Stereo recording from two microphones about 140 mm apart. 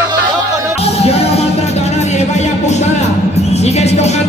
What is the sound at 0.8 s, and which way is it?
Speech, 45° left (ahead or behind).